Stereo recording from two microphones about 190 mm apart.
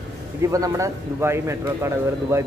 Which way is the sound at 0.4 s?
15° right (ahead or behind).